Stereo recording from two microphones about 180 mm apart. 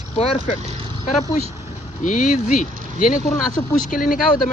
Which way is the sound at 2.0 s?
45° left (ahead or behind).